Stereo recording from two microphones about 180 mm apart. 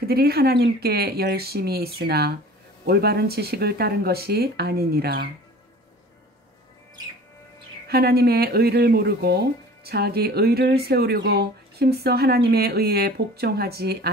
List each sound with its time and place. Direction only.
0.0 s speech: 60° right (ahead or behind)
7.9 s speech: 60° right (ahead or behind)